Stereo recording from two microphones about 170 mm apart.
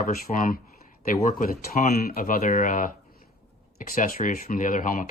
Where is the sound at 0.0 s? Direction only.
50° left (ahead or behind).